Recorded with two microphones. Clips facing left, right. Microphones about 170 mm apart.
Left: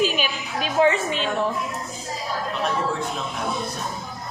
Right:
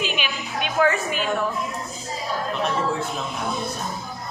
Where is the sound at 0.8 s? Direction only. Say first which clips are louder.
Left 2 dB; 25° left (ahead or behind).